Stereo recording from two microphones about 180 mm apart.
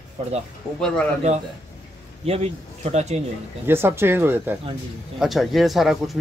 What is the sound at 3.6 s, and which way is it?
Speech, 15° right (ahead or behind).